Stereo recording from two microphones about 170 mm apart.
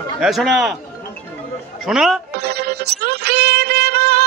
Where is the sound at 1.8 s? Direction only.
Centre (ahead or behind).